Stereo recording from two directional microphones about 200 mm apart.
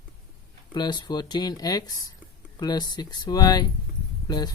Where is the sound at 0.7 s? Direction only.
20° left (ahead or behind).